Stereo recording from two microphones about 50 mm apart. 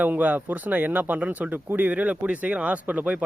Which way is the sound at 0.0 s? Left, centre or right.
Right.